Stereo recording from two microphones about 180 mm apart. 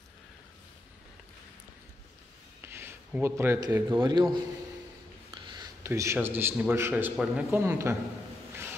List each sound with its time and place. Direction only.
2.6 s a man's voice: 15° right (ahead or behind)